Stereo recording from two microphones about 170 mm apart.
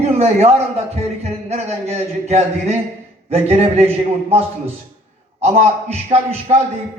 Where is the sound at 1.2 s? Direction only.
40° right (ahead or behind).